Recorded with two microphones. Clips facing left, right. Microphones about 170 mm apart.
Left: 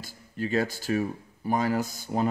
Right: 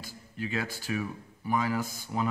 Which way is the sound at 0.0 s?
40° left (ahead or behind).